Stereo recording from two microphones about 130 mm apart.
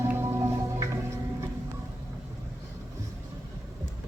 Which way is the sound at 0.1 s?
20° right (ahead or behind).